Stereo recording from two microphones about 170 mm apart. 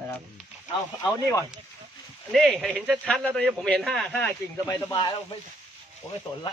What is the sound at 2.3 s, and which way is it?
A man's voice, centre (ahead or behind).